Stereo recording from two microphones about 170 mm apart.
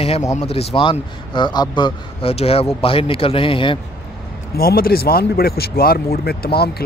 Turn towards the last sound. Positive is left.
turn(degrees=65)  # may be behind; listen again after turning